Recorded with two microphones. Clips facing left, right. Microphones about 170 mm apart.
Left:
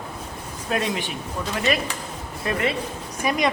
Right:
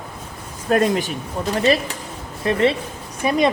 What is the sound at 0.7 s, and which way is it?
A woman's voice, 45° right (ahead or behind).